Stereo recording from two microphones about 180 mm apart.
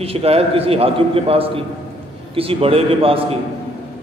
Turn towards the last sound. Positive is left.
turn(degrees=-30)  # may be behind; listen again after turning